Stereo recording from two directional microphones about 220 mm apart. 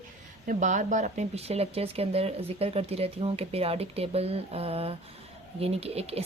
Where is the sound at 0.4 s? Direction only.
35° right (ahead or behind).